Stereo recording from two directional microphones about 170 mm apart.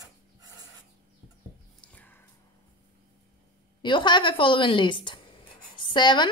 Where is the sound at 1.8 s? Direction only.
10° left (ahead or behind).